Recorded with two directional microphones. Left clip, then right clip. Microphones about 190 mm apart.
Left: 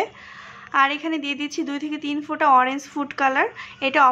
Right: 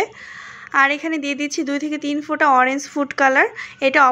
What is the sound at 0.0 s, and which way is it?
A woman's voice, 15° right (ahead or behind).